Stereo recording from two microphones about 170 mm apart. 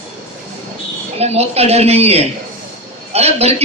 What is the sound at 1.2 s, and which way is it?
A man's voice, 40° right (ahead or behind).